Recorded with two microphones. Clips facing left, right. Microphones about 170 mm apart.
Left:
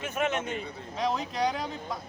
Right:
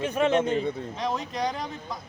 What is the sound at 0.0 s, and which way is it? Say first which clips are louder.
Speech: right 7 dB; 30° right (ahead or behind).